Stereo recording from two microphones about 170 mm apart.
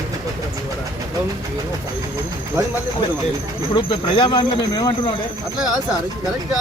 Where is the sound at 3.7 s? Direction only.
25° left (ahead or behind).